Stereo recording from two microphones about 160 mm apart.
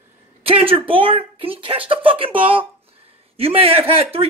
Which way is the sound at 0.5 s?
35° right (ahead or behind).